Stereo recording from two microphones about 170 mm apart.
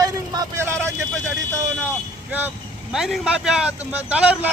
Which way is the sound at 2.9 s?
Centre (ahead or behind).